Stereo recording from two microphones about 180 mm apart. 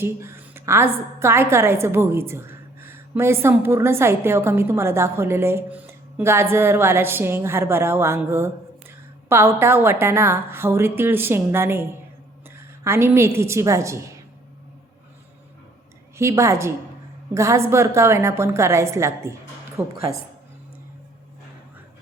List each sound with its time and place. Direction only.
0.0 s a sound: 15° right (ahead or behind)
1.2 s a woman's voice: 15° right (ahead or behind)
16.1 s a woman's voice: 15° right (ahead or behind)